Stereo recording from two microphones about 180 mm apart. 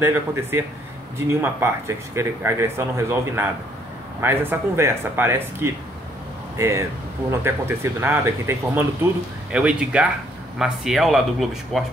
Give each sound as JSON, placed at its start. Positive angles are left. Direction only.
{"t": 0.0, "sound": "speech", "side_deg": -15}